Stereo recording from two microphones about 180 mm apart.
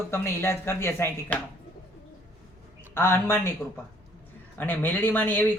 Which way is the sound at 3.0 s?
15° left (ahead or behind).